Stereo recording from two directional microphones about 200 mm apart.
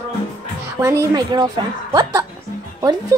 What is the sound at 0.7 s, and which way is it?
A woman's voice, 15° right (ahead or behind).